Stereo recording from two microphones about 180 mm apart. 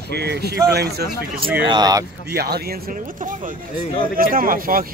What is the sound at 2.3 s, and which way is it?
Speech, 60° right (ahead or behind).